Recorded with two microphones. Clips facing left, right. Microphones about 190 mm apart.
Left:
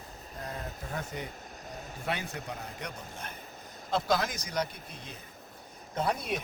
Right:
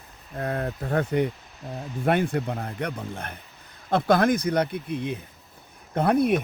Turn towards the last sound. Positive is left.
turn(degrees=-60)  # may be behind; listen again after turning